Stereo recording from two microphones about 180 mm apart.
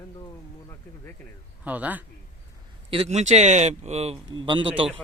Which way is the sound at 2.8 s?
35° right (ahead or behind).